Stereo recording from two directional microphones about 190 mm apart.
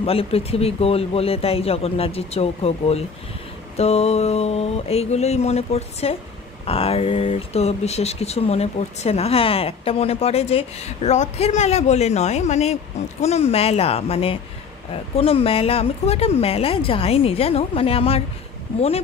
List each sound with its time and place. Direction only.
0.0 s speech: 30° left (ahead or behind)